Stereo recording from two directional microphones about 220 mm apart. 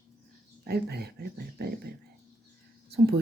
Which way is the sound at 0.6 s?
45° right (ahead or behind).